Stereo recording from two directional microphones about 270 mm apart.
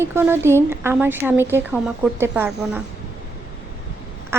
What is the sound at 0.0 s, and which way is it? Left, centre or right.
A woman's voice, centre.